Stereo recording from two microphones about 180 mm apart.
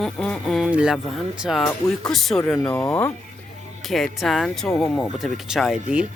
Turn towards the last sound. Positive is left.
turn(degrees=-5)  # may be behind; listen again after turning